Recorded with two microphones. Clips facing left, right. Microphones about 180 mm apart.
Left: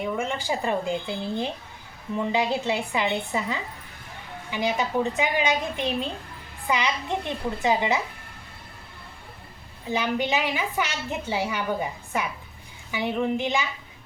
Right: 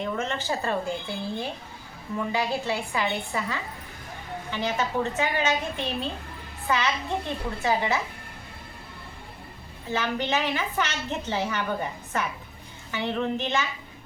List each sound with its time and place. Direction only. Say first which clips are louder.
0.0 s a woman's voice: left 1 dB; 10° left (ahead or behind)
9.9 s a woman's voice: left 2 dB; 15° left (ahead or behind)